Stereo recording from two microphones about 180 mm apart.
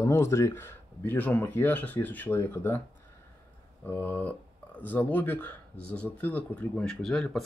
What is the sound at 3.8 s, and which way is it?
Speech, 10° left (ahead or behind).